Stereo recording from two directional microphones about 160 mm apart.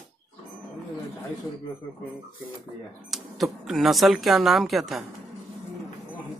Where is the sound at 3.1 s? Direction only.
Centre (ahead or behind).